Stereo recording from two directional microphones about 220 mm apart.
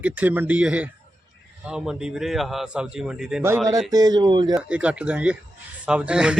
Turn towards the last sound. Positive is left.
turn(degrees=-5)  # may be behind; listen again after turning